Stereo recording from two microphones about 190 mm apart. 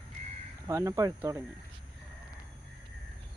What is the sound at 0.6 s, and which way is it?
Speech, 15° right (ahead or behind).